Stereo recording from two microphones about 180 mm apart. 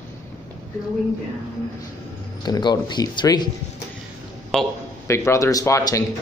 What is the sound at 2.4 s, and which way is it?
Speech, 25° left (ahead or behind).